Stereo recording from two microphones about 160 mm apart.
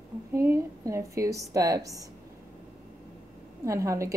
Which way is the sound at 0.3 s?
15° right (ahead or behind).